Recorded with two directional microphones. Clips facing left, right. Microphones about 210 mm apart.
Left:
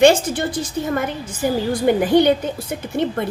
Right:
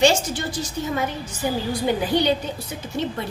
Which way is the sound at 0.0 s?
55° left (ahead or behind).